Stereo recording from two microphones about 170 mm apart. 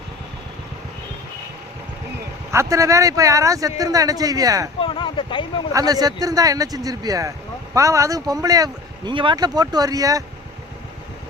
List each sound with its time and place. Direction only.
2.5 s speech: 15° right (ahead or behind)
4.8 s speech: 30° left (ahead or behind)
5.7 s speech: 20° right (ahead or behind)